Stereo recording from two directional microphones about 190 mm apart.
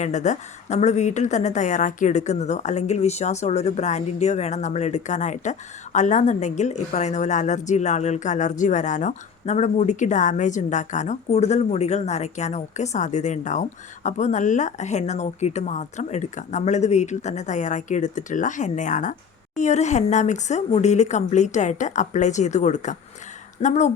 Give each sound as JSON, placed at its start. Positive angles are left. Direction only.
{"t": 0.0, "sound": "a woman's voice", "side_deg": 40}